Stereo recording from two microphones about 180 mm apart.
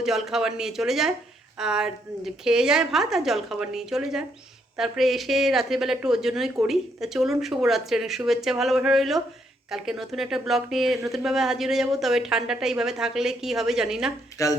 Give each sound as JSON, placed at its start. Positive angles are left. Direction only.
{"t": 0.0, "sound": "a woman's voice", "side_deg": 0}
{"t": 14.4, "sound": "speech", "side_deg": 20}